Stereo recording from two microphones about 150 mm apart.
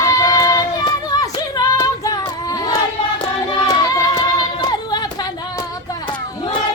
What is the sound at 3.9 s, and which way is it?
Music, 25° left (ahead or behind).